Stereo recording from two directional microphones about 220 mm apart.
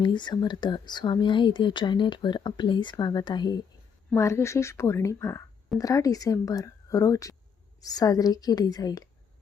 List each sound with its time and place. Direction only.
0.0 s speech: 20° left (ahead or behind)